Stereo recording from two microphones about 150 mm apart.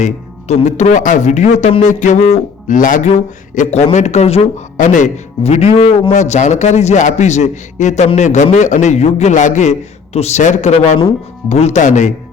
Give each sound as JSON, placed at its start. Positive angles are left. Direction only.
{"t": 0.0, "sound": "a man's voice", "side_deg": 50}